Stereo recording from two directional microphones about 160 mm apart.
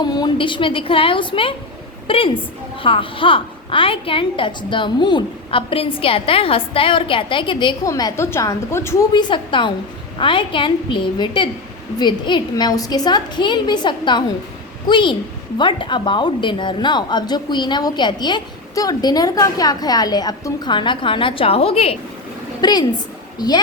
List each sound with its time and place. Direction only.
0.0 s a woman's voice: 25° left (ahead or behind)
9.3 s a woman's voice: 30° left (ahead or behind)
22.6 s a woman's voice: 25° left (ahead or behind)